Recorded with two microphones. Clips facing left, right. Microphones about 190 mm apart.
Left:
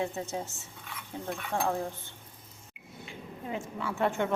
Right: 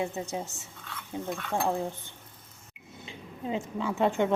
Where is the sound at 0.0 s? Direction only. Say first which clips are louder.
Right 1 dB; 15° right (ahead or behind).